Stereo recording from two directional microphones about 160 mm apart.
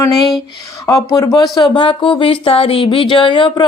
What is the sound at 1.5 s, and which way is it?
Speech, 30° left (ahead or behind).